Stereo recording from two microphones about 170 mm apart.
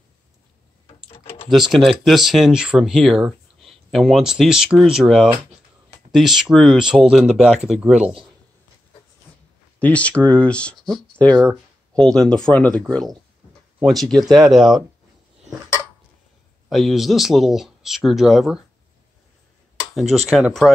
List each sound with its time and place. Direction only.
0.8 s a sound: 35° left (ahead or behind)
1.5 s speech: centre (ahead or behind)
9.8 s speech: 10° left (ahead or behind)
11.3 s a sound: 20° right (ahead or behind)
12.0 s speech: 5° left (ahead or behind)
16.6 s speech: centre (ahead or behind)
20.0 s speech: centre (ahead or behind)